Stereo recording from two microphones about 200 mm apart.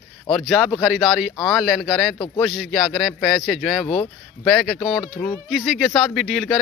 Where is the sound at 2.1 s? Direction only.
15° left (ahead or behind).